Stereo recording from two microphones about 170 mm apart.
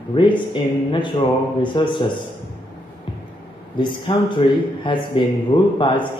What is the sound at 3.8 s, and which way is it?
A man's voice, 30° left (ahead or behind).